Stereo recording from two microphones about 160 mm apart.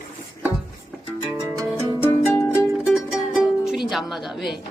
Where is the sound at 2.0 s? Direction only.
15° left (ahead or behind).